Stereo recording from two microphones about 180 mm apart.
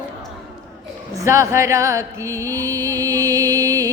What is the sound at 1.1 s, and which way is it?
A woman's voice, 15° right (ahead or behind).